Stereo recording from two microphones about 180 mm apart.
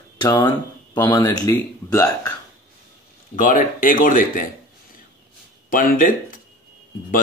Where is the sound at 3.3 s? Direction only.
50° left (ahead or behind).